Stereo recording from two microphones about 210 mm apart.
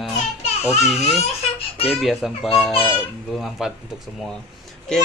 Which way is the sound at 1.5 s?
30° left (ahead or behind).